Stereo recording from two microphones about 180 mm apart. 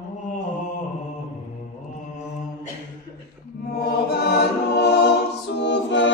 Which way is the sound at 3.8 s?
60° left (ahead or behind).